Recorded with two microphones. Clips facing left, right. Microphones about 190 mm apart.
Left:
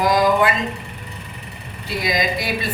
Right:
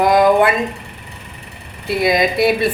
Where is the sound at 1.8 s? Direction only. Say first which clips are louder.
Right 7 dB; 60° right (ahead or behind).